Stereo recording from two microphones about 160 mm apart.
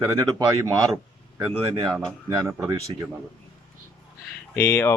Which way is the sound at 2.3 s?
20° right (ahead or behind).